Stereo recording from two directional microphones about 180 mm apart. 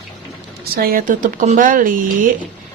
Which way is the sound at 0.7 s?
55° right (ahead or behind).